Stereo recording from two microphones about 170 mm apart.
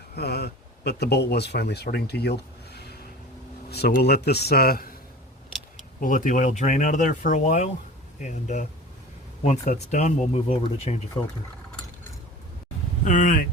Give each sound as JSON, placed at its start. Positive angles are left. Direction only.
{"t": 0.2, "sound": "speech", "side_deg": 75}
{"t": 6.0, "sound": "speech", "side_deg": 50}
{"t": 13.1, "sound": "speech", "side_deg": 50}